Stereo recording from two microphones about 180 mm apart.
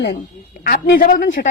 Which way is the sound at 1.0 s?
50° left (ahead or behind).